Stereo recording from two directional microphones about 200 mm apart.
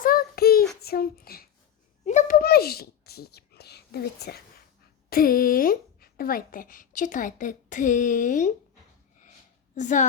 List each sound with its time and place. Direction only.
0.0 s child singing: 45° left (ahead or behind)
2.0 s a sound: 40° left (ahead or behind)
5.0 s a woman's voice: 50° left (ahead or behind)
9.7 s a woman's voice: 35° left (ahead or behind)